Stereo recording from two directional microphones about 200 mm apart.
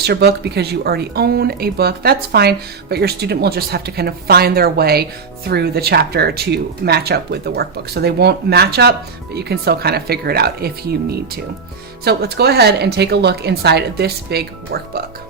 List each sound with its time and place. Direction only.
0.0 s speech: 55° right (ahead or behind)